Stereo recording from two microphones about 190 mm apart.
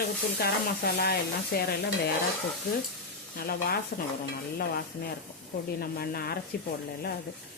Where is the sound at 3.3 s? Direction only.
55° left (ahead or behind).